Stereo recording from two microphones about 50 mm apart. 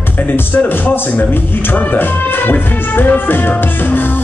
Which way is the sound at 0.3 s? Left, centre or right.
Left.